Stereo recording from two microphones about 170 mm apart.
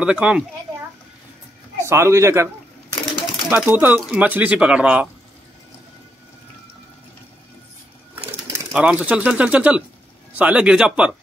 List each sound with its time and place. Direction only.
0.0 s speech: 5° right (ahead or behind)
1.8 s speech: 15° right (ahead or behind)
8.5 s speech: 5° right (ahead or behind)